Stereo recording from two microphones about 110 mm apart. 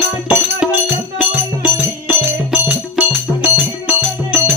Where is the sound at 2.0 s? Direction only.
15° right (ahead or behind).